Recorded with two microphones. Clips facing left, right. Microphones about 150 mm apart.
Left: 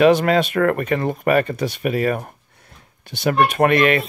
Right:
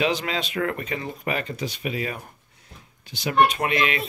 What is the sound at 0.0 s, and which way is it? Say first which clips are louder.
Speech: left 11 dB; 55° left (ahead or behind).